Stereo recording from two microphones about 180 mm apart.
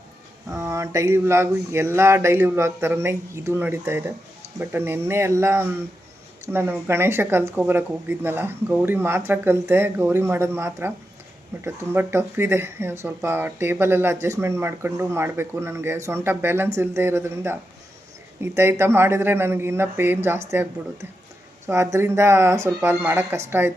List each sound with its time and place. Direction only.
0.5 s speech: 15° right (ahead or behind)